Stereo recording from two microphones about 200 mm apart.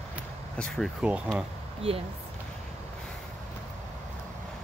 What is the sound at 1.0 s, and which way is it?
Speech, 5° right (ahead or behind).